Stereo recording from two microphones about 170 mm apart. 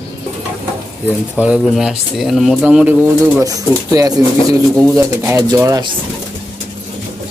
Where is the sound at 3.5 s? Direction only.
20° right (ahead or behind).